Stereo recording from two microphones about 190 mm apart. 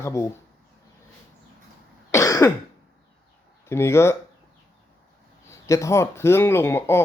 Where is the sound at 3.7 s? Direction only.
15° left (ahead or behind).